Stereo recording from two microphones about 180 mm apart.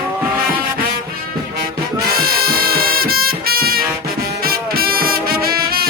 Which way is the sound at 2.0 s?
55° right (ahead or behind).